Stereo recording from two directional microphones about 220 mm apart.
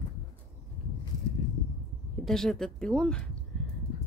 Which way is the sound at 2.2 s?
Centre (ahead or behind).